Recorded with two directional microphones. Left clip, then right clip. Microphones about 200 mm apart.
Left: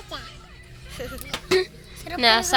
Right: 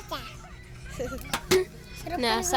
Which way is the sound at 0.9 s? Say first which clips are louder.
Even; 15° right (ahead or behind).